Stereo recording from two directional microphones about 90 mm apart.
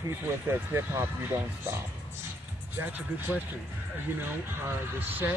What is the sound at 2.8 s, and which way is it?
Speech, 20° right (ahead or behind).